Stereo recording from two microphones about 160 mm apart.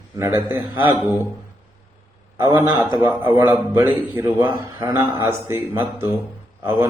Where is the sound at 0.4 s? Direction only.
15° right (ahead or behind).